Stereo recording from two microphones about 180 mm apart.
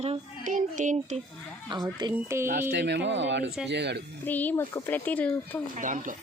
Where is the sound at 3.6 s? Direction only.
70° right (ahead or behind).